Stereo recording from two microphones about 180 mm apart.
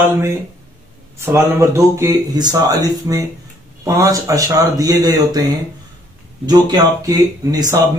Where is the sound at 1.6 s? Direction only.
20° right (ahead or behind).